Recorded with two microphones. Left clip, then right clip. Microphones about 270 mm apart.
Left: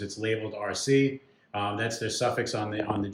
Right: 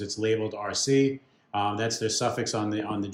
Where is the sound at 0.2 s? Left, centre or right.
Centre.